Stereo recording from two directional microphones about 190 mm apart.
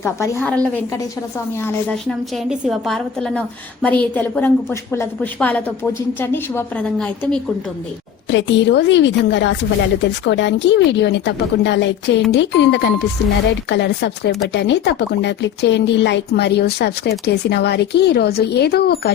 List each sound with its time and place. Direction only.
0.0 s a woman's voice: 10° left (ahead or behind)
8.3 s a woman's voice: 70° left (ahead or behind); by 19.1 s 55° left (ahead or behind)